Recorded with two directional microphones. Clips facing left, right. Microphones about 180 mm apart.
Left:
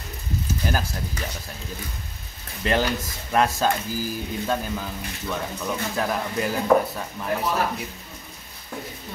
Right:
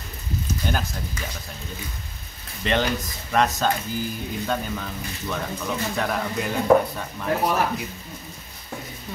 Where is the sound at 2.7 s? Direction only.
5° left (ahead or behind).